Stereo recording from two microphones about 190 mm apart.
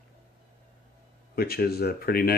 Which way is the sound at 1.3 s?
55° left (ahead or behind).